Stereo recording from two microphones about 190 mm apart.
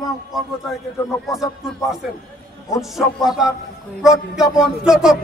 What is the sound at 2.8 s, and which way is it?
A man's voice, centre (ahead or behind).